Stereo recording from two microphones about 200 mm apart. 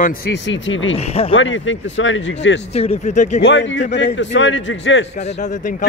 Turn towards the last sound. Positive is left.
turn(degrees=40)  # may be behind; listen again after turning